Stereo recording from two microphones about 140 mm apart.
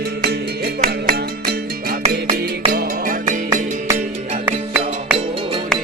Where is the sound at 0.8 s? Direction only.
80° right.